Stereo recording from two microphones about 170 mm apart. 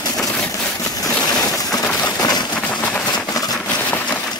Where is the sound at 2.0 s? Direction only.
25° left (ahead or behind).